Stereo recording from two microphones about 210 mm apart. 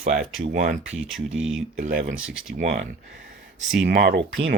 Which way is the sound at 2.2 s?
5° right (ahead or behind).